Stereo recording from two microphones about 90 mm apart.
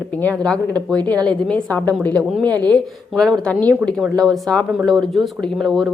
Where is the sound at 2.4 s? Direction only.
50° right (ahead or behind).